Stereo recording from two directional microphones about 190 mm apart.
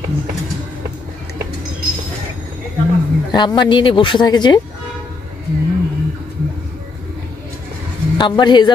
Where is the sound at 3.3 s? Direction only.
25° left (ahead or behind).